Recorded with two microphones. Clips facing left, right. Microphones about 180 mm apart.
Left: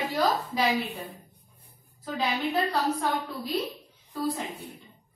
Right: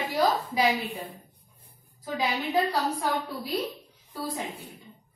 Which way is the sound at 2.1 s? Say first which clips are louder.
Right 1 dB; 10° right (ahead or behind).